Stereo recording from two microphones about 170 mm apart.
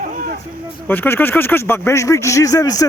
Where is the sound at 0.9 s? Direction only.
10° left (ahead or behind).